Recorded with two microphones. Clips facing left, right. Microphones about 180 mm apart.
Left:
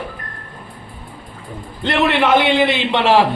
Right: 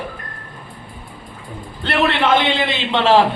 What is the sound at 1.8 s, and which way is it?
A man's voice, 20° left (ahead or behind).